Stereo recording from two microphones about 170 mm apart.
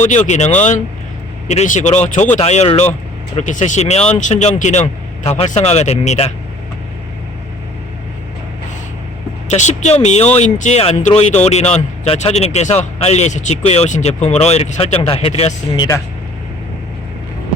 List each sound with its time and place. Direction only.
0.0 s speech: 45° left (ahead or behind)
9.5 s speech: 45° left (ahead or behind)